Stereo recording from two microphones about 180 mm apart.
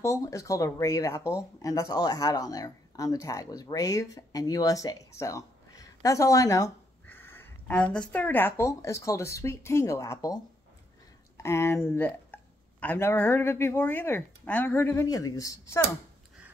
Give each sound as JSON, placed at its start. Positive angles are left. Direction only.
{"t": 0.0, "sound": "speech", "side_deg": 15}